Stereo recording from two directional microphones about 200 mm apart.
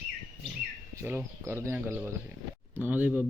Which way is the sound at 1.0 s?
10° right (ahead or behind).